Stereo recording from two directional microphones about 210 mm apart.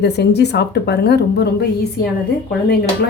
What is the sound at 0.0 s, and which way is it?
Speech, 55° left (ahead or behind).